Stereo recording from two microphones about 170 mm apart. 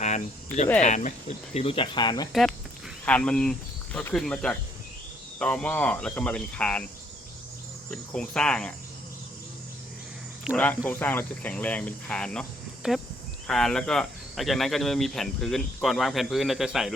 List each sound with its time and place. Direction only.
0.8 s speech: 45° left (ahead or behind)
1.5 s speech: 35° left (ahead or behind)
2.3 s speech: centre (ahead or behind)
7.9 s speech: 5° left (ahead or behind)
10.5 s speech: 5° right (ahead or behind)
10.8 s speech: 10° left (ahead or behind)